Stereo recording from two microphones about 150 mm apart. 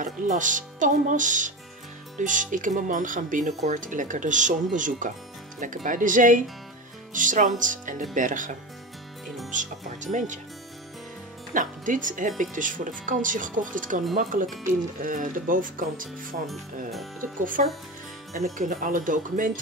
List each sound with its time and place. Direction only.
0.0 s speech: 60° right (ahead or behind)
11.5 s speech: 60° right (ahead or behind)